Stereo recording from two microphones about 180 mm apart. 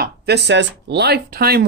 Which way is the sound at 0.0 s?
65° right (ahead or behind).